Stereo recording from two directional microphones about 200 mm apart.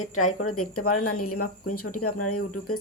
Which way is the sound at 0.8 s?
45° left (ahead or behind).